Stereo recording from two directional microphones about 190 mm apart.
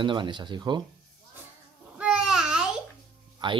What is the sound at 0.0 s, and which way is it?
Speech, 25° right (ahead or behind).